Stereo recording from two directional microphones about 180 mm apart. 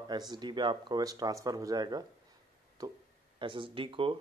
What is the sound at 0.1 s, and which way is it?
Speech, 25° right (ahead or behind).